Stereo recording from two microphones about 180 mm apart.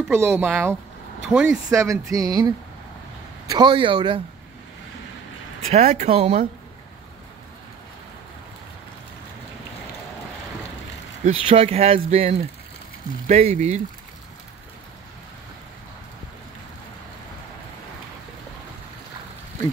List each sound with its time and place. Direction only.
0.1 s speech: 15° right (ahead or behind)
1.7 s speech: 15° right (ahead or behind)
5.7 s speech: 40° right (ahead or behind)
11.2 s speech: 30° right (ahead or behind)